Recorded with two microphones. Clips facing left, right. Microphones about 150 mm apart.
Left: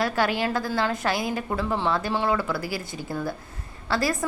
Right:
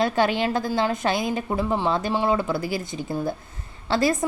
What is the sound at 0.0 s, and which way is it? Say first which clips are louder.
A woman's voice: right 3 dB; 20° right (ahead or behind).